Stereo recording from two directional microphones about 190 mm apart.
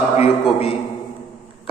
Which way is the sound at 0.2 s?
30° left (ahead or behind).